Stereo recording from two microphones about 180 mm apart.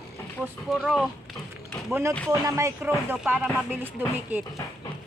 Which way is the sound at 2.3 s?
20° right (ahead or behind).